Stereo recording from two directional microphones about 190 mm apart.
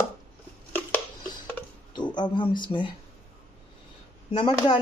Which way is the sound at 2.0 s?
25° left (ahead or behind).